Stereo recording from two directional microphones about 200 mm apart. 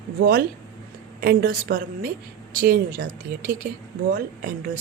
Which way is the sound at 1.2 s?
50° right (ahead or behind).